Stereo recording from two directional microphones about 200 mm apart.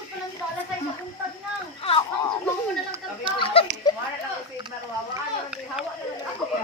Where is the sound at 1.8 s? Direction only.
30° left (ahead or behind).